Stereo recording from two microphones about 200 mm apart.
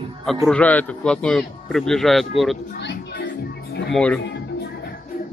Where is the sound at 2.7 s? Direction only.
55° left (ahead or behind).